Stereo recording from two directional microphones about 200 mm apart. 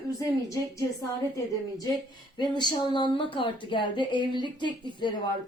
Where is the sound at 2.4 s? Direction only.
20° left (ahead or behind).